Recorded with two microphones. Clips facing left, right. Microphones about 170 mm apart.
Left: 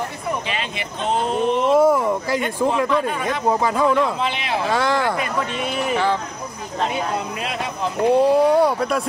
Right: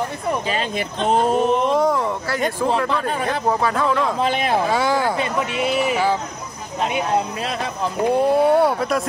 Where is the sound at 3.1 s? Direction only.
35° right (ahead or behind).